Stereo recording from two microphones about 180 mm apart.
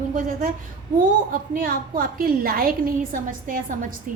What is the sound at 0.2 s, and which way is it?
A woman's voice, 50° right (ahead or behind).